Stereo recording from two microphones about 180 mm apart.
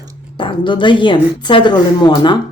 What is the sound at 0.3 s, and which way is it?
Speech, 25° left (ahead or behind).